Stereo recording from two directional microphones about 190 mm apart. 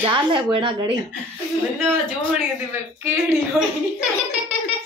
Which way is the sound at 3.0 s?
15° right (ahead or behind).